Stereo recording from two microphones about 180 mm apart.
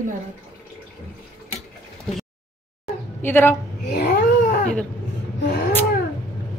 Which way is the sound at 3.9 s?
60° left (ahead or behind).